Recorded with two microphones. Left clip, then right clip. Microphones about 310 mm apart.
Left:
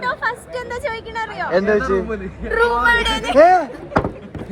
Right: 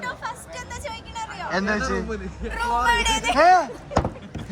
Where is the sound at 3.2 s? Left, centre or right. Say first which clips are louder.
Left 5 dB; centre.